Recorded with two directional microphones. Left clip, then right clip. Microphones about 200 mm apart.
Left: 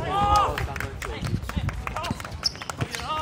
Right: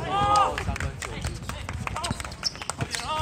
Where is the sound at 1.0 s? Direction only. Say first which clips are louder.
Left 2 dB; 40° right (ahead or behind).